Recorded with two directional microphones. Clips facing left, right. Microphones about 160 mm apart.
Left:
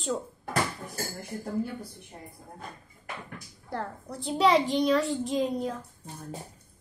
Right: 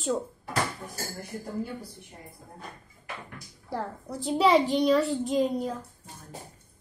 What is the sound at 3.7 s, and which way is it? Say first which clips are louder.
A child's voice: right 2 dB; 5° right (ahead or behind).